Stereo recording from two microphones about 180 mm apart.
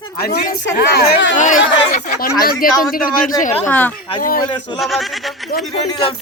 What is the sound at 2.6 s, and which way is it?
Speech, 50° left (ahead or behind).